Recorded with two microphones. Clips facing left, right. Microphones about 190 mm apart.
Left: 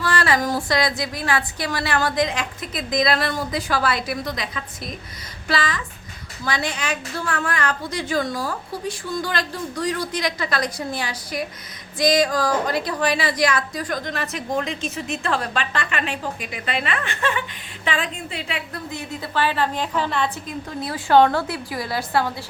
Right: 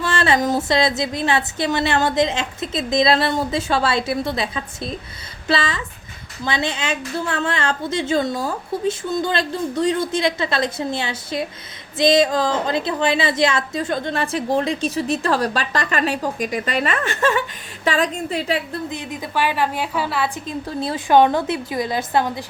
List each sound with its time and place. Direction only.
0.0 s a woman's voice: 25° right (ahead or behind); by 18.6 s 40° right (ahead or behind)
18.9 s a woman's voice: 15° right (ahead or behind)
20.7 s a woman's voice: 25° right (ahead or behind)
21.1 s a woman's voice: 15° right (ahead or behind)